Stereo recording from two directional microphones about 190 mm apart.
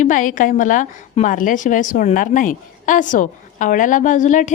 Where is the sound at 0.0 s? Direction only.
40° left (ahead or behind).